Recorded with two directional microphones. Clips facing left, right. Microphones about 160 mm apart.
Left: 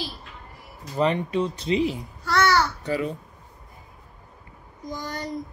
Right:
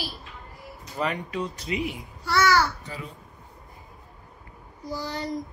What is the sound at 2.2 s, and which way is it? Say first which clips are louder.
Babbling: even; 10° right (ahead or behind).